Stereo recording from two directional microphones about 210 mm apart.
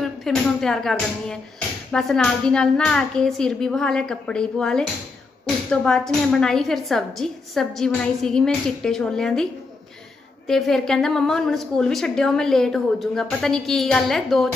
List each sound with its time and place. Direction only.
0.0 s a woman's voice: centre (ahead or behind)